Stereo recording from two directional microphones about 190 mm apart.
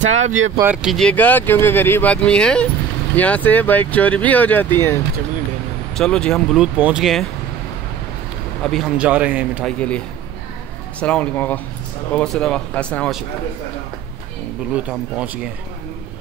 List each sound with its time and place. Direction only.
0.1 s speech: 40° right (ahead or behind)
0.6 s speech: 10° right (ahead or behind)
0.9 s speech: 5° left (ahead or behind)
8.6 s speech: centre (ahead or behind)
9.7 s speech: 5° left (ahead or behind)
14.7 s speech: 5° right (ahead or behind)